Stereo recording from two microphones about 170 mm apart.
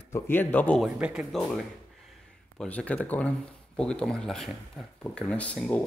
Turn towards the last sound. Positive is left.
turn(degrees=10)  # may be behind; listen again after turning